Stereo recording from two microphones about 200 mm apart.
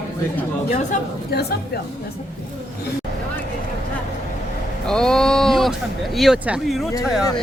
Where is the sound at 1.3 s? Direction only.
55° left (ahead or behind).